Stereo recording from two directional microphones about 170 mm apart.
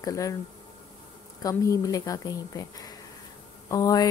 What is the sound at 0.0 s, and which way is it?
Speech, 20° left (ahead or behind).